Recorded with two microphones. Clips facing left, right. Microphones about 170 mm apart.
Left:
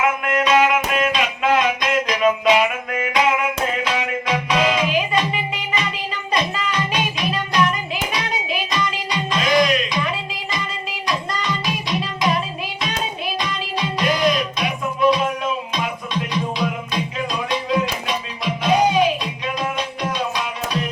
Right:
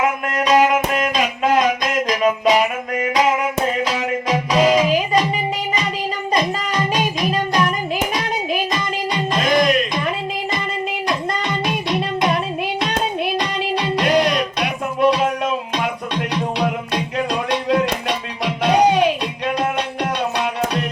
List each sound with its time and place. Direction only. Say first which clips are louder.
0.0 s music: even; 40° right (ahead or behind)
6.3 s music: right 2 dB; 40° right (ahead or behind)
11.1 s music: even; 55° right (ahead or behind)